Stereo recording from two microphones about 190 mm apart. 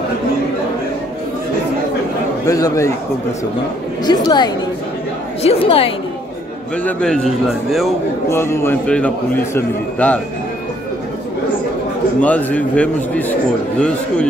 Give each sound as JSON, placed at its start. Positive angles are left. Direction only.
{"t": 2.4, "sound": "a man's voice", "side_deg": 15}
{"t": 4.0, "sound": "a woman's voice", "side_deg": 20}
{"t": 6.8, "sound": "a man's voice", "side_deg": 5}
{"t": 8.3, "sound": "a man's voice", "side_deg": 15}
{"t": 12.2, "sound": "a man's voice", "side_deg": 10}